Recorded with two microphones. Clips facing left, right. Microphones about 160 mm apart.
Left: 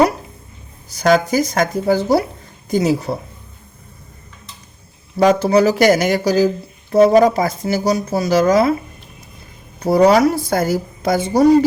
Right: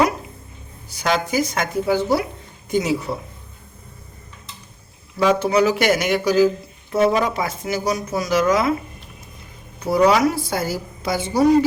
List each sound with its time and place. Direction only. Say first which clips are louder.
0.9 s speech: left 7 dB; 45° left (ahead or behind)
5.1 s speech: left 4 dB; 40° left (ahead or behind)
9.8 s a woman's voice: left 4 dB; 40° left (ahead or behind)